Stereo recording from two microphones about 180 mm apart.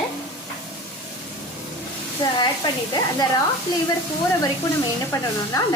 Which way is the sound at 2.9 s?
20° left (ahead or behind).